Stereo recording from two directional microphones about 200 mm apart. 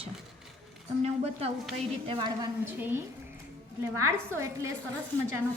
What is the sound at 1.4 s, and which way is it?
A woman's voice, 30° right (ahead or behind).